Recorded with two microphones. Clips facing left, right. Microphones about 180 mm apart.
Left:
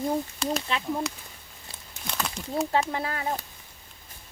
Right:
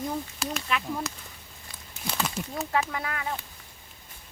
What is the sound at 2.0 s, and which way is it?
Speech, 5° right (ahead or behind).